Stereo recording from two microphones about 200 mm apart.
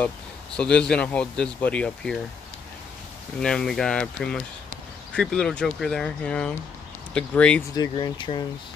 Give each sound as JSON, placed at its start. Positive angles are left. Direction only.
{"t": 0.6, "sound": "speech", "side_deg": 5}
{"t": 3.3, "sound": "speech", "side_deg": 5}
{"t": 7.7, "sound": "speech", "side_deg": 20}